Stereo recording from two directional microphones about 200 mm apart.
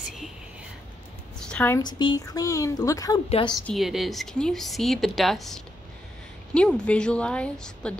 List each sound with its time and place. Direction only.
1.5 s a woman's voice: 10° left (ahead or behind)
1.8 s speech: 20° left (ahead or behind)
3.3 s a woman's voice: 25° left (ahead or behind)
3.6 s speech: centre (ahead or behind)